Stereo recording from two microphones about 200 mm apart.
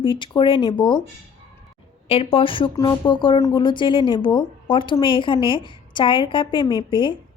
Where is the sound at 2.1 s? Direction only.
30° left (ahead or behind).